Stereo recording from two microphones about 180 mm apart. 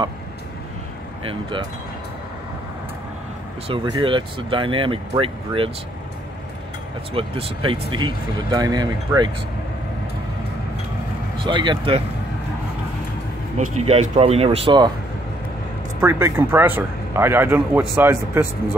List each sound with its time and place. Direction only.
3.6 s speech: 25° right (ahead or behind)
7.2 s speech: 30° right (ahead or behind)
11.3 s speech: 25° right (ahead or behind)
13.6 s speech: 35° right (ahead or behind)
16.0 s speech: 15° right (ahead or behind)